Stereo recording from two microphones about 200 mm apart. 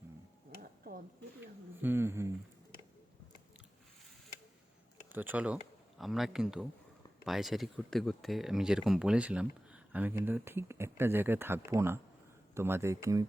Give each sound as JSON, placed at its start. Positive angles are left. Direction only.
{"t": 0.9, "sound": "speech", "side_deg": -45}
{"t": 1.4, "sound": "speech", "side_deg": -10}
{"t": 5.1, "sound": "speech", "side_deg": -10}